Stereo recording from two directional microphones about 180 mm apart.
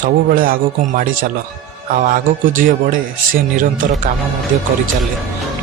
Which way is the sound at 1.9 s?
50° right (ahead or behind).